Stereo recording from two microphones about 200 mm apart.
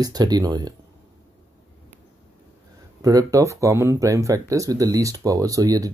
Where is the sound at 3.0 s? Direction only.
15° right (ahead or behind).